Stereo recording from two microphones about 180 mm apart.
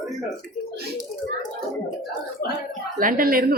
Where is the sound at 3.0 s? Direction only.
50° right (ahead or behind).